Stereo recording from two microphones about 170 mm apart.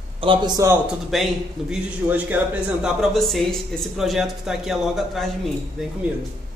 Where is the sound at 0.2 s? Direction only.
30° right (ahead or behind).